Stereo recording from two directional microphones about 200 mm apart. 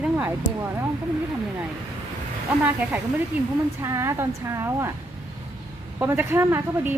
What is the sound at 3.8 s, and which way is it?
A woman's voice, 15° right (ahead or behind).